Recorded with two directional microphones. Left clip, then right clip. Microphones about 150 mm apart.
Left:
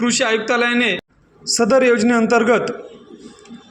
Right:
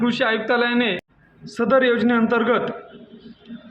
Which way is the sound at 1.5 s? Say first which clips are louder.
Left 4 dB; 40° left (ahead or behind).